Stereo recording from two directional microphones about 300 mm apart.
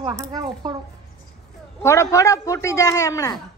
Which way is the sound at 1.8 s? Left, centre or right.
Centre.